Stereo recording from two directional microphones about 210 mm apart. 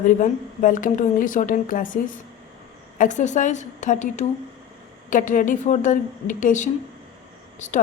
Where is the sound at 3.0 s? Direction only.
35° left (ahead or behind).